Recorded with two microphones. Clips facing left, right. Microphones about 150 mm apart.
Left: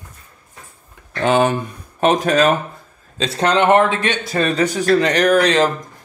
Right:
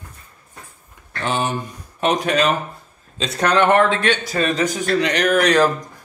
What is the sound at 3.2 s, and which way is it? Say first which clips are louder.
Speech: left 2 dB; 30° left (ahead or behind).